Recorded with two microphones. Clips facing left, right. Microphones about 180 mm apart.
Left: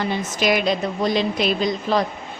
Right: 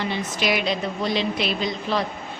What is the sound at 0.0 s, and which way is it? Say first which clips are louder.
A woman's voice: left 3 dB; 45° left (ahead or behind).